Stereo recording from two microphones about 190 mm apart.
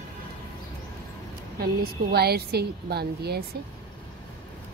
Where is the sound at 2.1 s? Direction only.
55° right (ahead or behind).